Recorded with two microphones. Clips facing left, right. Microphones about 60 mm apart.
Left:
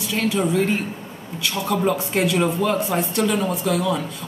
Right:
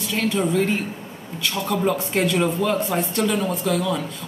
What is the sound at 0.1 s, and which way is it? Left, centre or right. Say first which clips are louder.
Speech: left 1 dB; centre.